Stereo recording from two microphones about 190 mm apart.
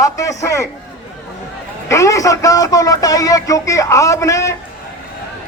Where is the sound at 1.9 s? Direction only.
15° left (ahead or behind).